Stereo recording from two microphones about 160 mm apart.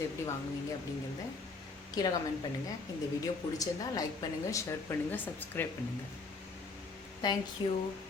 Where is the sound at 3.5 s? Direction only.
25° left (ahead or behind).